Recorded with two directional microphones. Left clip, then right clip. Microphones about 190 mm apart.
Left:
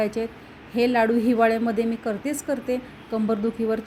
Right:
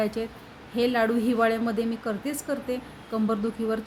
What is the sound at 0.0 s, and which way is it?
A woman's voice, 10° left (ahead or behind).